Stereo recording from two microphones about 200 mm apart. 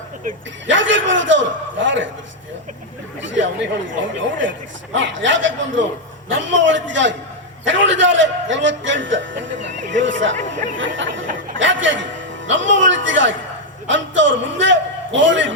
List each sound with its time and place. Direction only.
0.7 s a man's voice: 70° right (ahead or behind)
3.2 s a man's voice: 65° right (ahead or behind)